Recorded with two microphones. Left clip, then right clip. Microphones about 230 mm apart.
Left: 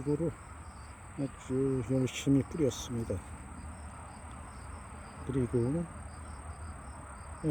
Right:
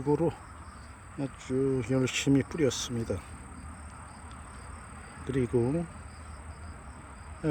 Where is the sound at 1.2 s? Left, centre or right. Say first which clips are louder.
Right 3 dB; centre.